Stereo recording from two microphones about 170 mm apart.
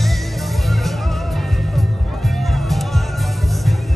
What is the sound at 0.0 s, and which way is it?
Music, centre (ahead or behind).